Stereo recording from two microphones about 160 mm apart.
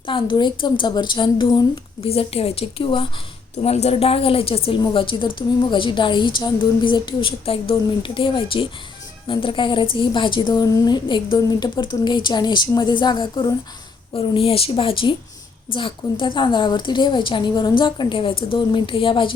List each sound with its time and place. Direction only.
0.1 s a woman's voice: 30° left (ahead or behind)